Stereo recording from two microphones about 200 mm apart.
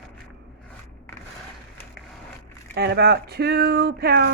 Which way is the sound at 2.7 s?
55° right (ahead or behind).